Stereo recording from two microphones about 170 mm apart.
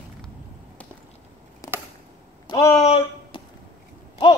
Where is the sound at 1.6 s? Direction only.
20° left (ahead or behind).